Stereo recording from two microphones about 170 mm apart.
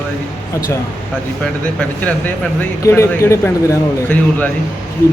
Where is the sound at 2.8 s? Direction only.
15° left (ahead or behind).